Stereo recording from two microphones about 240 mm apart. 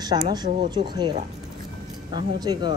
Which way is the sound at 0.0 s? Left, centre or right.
Centre.